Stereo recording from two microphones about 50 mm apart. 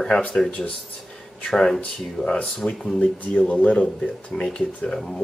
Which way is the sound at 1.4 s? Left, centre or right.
Centre.